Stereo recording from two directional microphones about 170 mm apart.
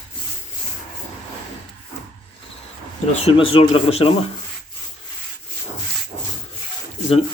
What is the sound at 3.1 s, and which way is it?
Speech, 35° left (ahead or behind).